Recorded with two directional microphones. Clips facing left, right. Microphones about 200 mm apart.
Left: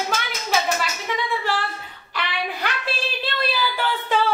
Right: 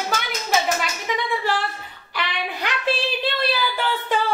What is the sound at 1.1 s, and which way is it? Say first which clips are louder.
Speech: right 2 dB; 15° right (ahead or behind).